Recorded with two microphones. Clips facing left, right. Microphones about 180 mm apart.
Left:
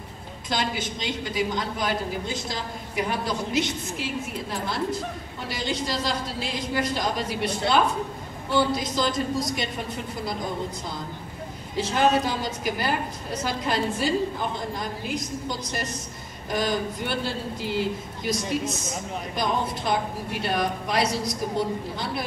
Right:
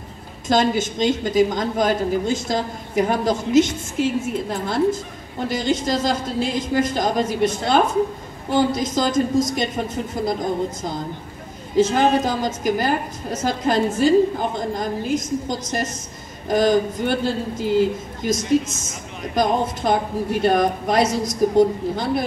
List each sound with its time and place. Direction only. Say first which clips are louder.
0.5 s a woman's voice: right 10 dB; 45° right (ahead or behind)